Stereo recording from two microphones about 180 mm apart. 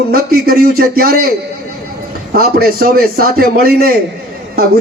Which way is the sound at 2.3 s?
55° right (ahead or behind).